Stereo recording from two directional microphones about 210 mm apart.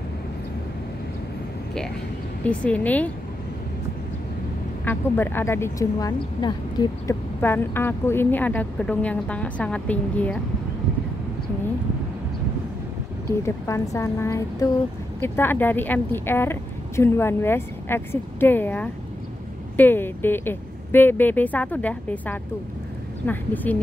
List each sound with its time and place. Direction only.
2.4 s speech: 5° left (ahead or behind)
4.8 s speech: 10° left (ahead or behind)
13.4 s speech: 15° left (ahead or behind)